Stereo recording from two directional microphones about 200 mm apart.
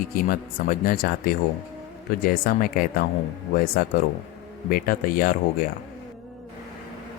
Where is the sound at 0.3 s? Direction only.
45° left (ahead or behind).